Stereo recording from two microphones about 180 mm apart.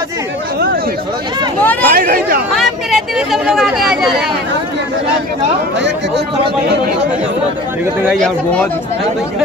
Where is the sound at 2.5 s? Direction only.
Centre (ahead or behind).